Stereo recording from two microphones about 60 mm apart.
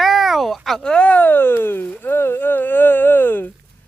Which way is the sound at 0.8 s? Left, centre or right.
Centre.